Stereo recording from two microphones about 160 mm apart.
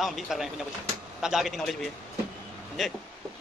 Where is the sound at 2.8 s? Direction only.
Centre (ahead or behind).